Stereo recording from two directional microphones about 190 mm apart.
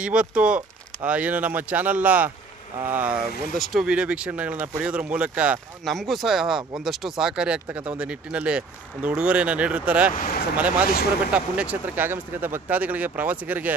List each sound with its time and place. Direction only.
0.0 s speech: 5° right (ahead or behind)
10.1 s speech: 45° left (ahead or behind)
11.3 s speech: 5° right (ahead or behind)